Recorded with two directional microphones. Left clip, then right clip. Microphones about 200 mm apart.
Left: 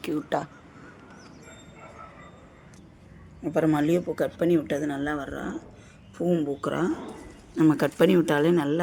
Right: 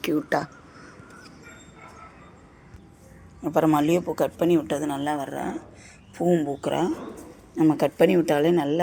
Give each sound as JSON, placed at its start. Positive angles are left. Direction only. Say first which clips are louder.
{"t": 0.0, "sound": "speech", "louder": "right 4 dB", "side_deg": -10}
{"t": 3.4, "sound": "speech", "louder": "right 3 dB", "side_deg": -5}
{"t": 7.5, "sound": "speech", "louder": "right 1 dB", "side_deg": 20}